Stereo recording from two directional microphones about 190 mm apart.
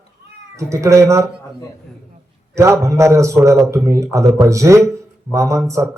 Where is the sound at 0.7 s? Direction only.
15° right (ahead or behind).